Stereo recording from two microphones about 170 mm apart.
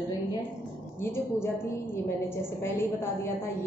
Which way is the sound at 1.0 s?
15° left (ahead or behind).